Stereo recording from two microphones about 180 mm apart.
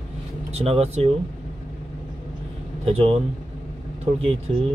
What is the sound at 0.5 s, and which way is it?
Speech, 35° right (ahead or behind).